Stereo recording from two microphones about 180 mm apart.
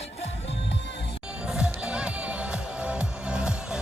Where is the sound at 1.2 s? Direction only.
5° right (ahead or behind).